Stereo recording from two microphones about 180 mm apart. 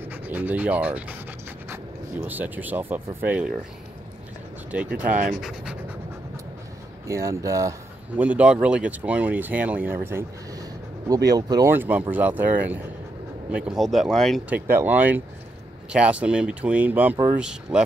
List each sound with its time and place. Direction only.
0.1 s speech: 10° right (ahead or behind)
4.6 s speech: 5° right (ahead or behind)
7.1 s speech: 15° right (ahead or behind)
8.2 s speech: 5° right (ahead or behind)
14.7 s speech: 10° right (ahead or behind)